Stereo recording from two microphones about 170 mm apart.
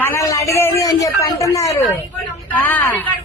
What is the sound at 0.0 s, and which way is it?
A man's voice, 15° left (ahead or behind).